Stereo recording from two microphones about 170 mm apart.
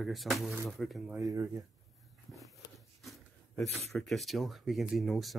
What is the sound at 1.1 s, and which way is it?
Speech, 20° right (ahead or behind).